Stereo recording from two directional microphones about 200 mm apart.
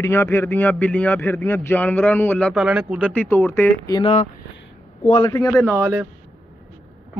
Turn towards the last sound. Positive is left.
turn(degrees=-10)  # may be behind; listen again after turning